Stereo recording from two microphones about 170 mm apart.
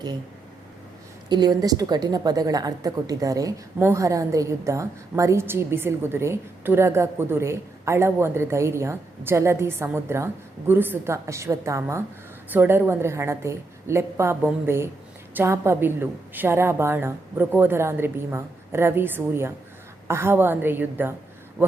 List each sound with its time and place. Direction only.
1.3 s a woman's voice: 25° right (ahead or behind)